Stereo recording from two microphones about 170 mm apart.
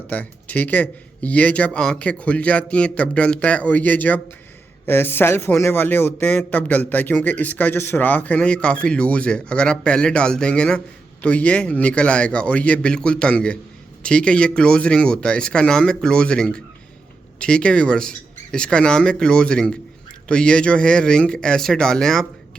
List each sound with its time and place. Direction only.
0.1 s a man's voice: 10° left (ahead or behind)